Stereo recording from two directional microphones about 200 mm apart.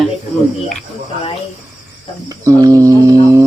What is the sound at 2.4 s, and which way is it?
A man's voice, 15° right (ahead or behind).